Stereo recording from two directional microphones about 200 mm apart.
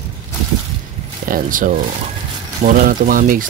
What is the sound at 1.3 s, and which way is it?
Speech, 40° right (ahead or behind).